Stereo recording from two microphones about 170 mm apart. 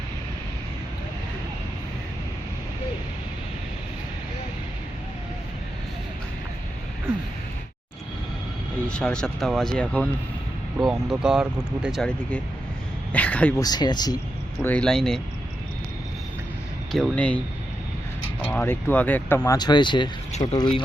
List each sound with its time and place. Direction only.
8.9 s speech: 5° left (ahead or behind)
13.6 s speech: 25° left (ahead or behind)
14.6 s speech: 10° left (ahead or behind)
16.9 s speech: 5° left (ahead or behind)
18.4 s speech: 10° left (ahead or behind)
19.5 s speech: 25° left (ahead or behind)